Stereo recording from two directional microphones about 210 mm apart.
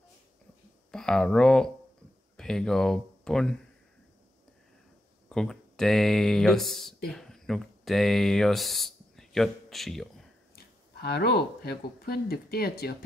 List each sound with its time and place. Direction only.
0.9 s speech: 5° left (ahead or behind)
5.3 s speech: centre (ahead or behind)
10.5 s speech: 50° left (ahead or behind)